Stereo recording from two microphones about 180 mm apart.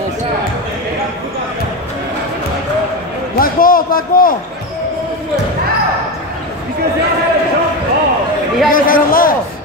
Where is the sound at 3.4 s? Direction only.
50° left (ahead or behind).